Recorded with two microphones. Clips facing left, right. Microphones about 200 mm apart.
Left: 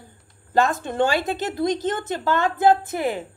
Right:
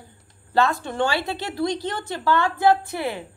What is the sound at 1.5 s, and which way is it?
A woman's voice, 20° left (ahead or behind).